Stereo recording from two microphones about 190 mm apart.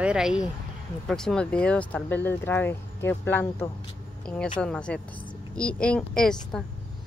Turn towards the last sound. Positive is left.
turn(degrees=5)  # may be behind; listen again after turning